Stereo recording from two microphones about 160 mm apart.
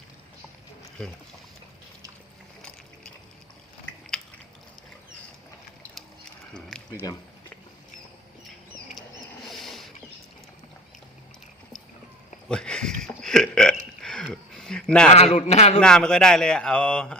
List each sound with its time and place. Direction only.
1.0 s a man's voice: 5° left (ahead or behind)
2.6 s boat: 5° left (ahead or behind)
6.5 s a sound: 5° left (ahead or behind)
6.9 s speech: 20° left (ahead or behind)
9.5 s a sound: centre (ahead or behind)
12.5 s burping: 5° left (ahead or behind)
15.1 s a man's voice: 40° left (ahead or behind)
15.8 s a man's voice: 5° left (ahead or behind)